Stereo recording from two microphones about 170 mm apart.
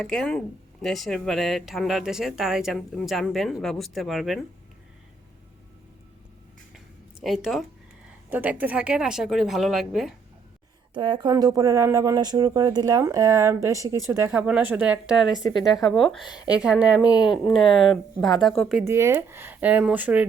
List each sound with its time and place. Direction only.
0.0 s speech: 5° left (ahead or behind)
6.7 s a sound: centre (ahead or behind)
8.3 s speech: 10° right (ahead or behind)
10.9 s speech: 30° right (ahead or behind)
14.3 s speech: 5° right (ahead or behind)
15.4 s speech: 25° left (ahead or behind)
15.9 s speech: centre (ahead or behind)
16.2 s speech: 25° left (ahead or behind)
16.6 s speech: 5° right (ahead or behind)
17.0 s speech: 25° left (ahead or behind)
17.2 s speech: centre (ahead or behind)
17.5 s speech: 30° left (ahead or behind)
17.7 s speech: centre (ahead or behind)
18.9 s speech: 15° right (ahead or behind)